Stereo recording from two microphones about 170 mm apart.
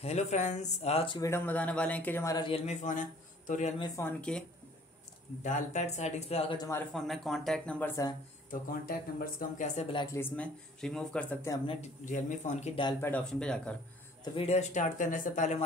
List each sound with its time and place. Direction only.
0.0 s speech: 40° left (ahead or behind)
1.2 s speech: 15° left (ahead or behind)
2.4 s speech: 35° left (ahead or behind)
3.8 s speech: 20° left (ahead or behind)
4.2 s speech: 5° left (ahead or behind)
5.4 s speech: 45° left (ahead or behind)
6.9 s speech: centre (ahead or behind)
8.5 s speech: 55° left (ahead or behind)
9.8 s speech: 30° left (ahead or behind)
10.1 s speech: 10° left (ahead or behind)
11.6 s speech: 30° left (ahead or behind)
12.0 s speech: 45° left (ahead or behind)
13.0 s speech: 5° left (ahead or behind)
14.2 s speech: 35° left (ahead or behind)